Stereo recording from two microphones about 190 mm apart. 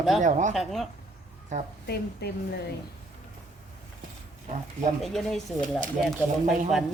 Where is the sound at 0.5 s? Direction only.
Centre (ahead or behind).